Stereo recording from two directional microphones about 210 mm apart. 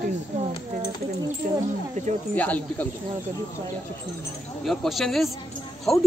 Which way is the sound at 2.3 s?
5° left (ahead or behind).